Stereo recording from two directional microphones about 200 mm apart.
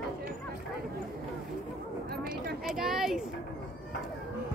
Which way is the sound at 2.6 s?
Centre (ahead or behind).